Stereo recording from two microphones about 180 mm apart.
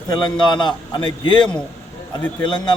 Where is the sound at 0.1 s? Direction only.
25° left (ahead or behind).